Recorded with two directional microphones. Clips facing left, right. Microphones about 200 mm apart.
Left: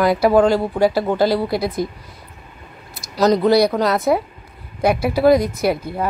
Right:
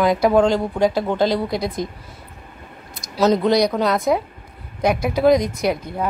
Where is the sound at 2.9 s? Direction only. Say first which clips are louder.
Left 1 dB; centre (ahead or behind).